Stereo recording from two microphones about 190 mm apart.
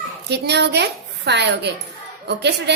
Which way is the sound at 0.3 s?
60° right (ahead or behind).